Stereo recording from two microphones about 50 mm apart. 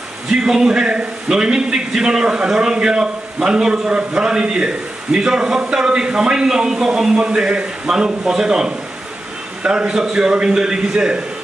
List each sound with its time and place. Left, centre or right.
0.3 s a man's voice: centre
9.6 s a man's voice: right